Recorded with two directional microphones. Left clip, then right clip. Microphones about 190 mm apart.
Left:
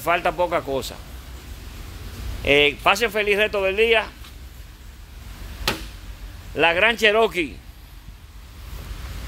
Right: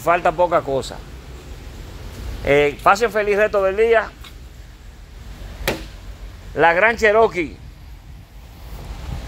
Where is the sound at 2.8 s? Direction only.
15° left (ahead or behind).